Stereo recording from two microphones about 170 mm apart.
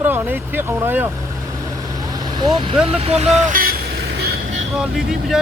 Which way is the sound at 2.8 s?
35° right (ahead or behind).